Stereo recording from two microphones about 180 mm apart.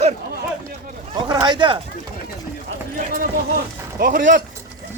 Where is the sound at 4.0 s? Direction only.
50° right (ahead or behind).